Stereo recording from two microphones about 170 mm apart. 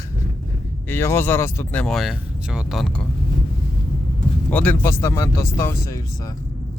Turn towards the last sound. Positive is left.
turn(degrees=15)  # may be behind; listen again after turning